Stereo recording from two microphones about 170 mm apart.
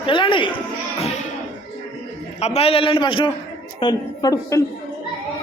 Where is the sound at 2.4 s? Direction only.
35° left (ahead or behind); by 4.6 s 20° left (ahead or behind).